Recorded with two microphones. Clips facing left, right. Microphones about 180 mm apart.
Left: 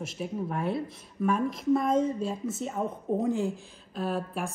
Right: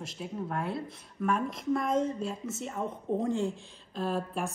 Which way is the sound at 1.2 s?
15° left (ahead or behind).